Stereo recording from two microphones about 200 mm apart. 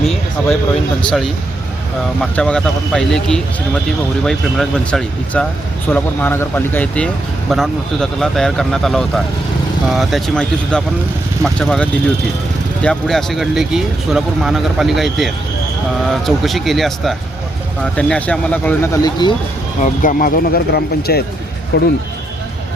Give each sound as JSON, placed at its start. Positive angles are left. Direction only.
{"t": 0.0, "sound": "a sound", "side_deg": 0}
{"t": 2.2, "sound": "speech", "side_deg": 5}
{"t": 19.8, "sound": "speech", "side_deg": 40}